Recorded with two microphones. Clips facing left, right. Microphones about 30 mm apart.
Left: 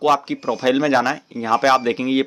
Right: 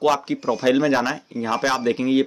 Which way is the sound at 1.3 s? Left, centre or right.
Left.